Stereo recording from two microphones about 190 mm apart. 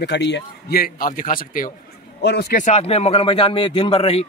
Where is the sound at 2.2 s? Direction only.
60° left (ahead or behind).